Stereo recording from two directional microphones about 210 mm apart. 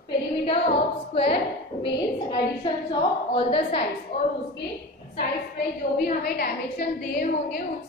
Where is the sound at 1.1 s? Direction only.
25° left (ahead or behind).